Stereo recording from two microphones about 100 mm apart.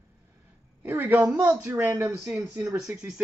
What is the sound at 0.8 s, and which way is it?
A woman's voice, 20° right (ahead or behind).